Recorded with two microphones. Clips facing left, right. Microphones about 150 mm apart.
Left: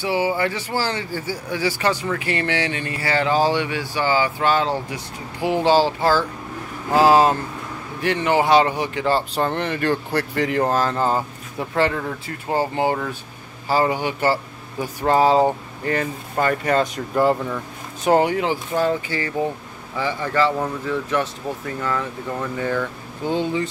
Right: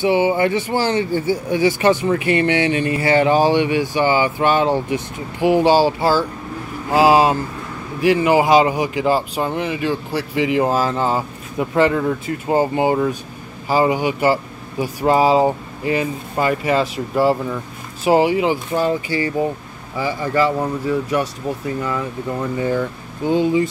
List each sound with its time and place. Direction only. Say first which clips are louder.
0.0 s speech: right 5 dB; 20° right (ahead or behind); by 11.2 s 5° right (ahead or behind)
11.7 s speech: right 5 dB; 20° right (ahead or behind)